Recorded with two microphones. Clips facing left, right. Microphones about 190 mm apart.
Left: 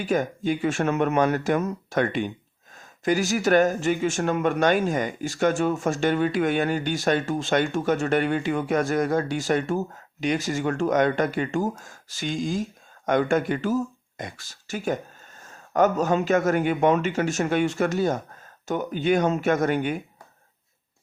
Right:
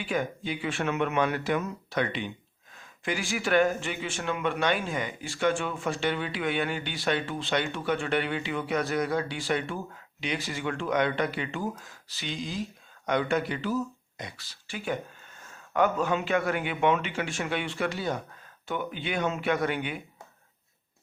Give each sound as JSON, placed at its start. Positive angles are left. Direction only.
{"t": 0.0, "sound": "speech", "side_deg": 45}